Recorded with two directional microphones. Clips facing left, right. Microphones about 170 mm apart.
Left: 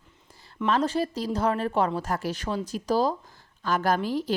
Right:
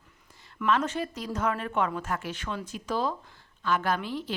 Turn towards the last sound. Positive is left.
turn(degrees=40)  # may be behind; listen again after turning